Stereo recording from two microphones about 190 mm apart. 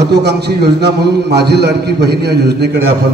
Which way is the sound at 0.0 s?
60° right (ahead or behind).